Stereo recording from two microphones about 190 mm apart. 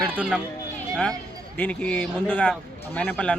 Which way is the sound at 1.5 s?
5° left (ahead or behind).